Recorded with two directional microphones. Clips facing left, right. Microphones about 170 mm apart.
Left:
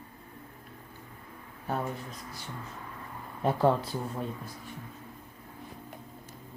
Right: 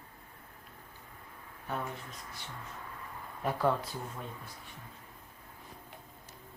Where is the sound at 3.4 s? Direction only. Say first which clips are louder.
Left 5 dB; 30° left (ahead or behind).